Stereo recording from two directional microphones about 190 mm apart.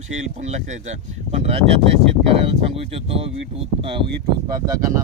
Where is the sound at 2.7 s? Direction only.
30° right (ahead or behind).